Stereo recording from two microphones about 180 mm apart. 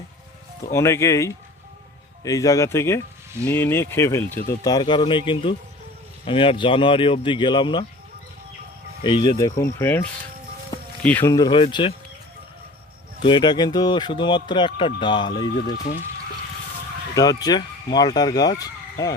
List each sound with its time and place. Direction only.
0.7 s speech: 15° left (ahead or behind)
9.0 s speech: 25° left (ahead or behind); by 11.3 s 10° left (ahead or behind)
11.3 s speech: 25° left (ahead or behind)
13.2 s speech: 25° left (ahead or behind)
17.2 s speech: 20° left (ahead or behind)